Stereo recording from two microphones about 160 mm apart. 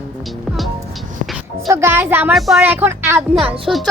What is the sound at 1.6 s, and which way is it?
Speech, 15° right (ahead or behind).